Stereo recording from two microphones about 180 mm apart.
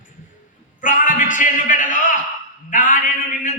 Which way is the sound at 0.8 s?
45° left (ahead or behind).